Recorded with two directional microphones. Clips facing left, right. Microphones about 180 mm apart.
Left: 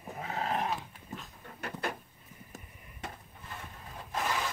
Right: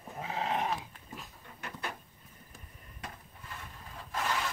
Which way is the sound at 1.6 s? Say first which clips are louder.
Left 5 dB; 40° left (ahead or behind).